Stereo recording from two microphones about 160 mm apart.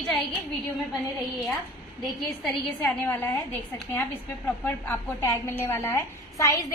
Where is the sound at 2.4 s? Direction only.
5° left (ahead or behind).